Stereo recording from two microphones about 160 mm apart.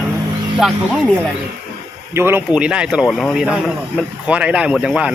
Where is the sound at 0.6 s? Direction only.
5° right (ahead or behind).